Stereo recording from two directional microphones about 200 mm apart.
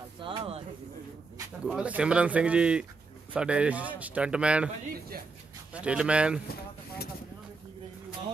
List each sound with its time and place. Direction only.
0.2 s a sound: 30° right (ahead or behind)
1.6 s speech: 5° right (ahead or behind)
5.8 s speech: 5° right (ahead or behind)
6.4 s speech: 50° left (ahead or behind)